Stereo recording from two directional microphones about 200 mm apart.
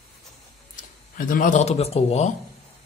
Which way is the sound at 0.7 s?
45° left (ahead or behind).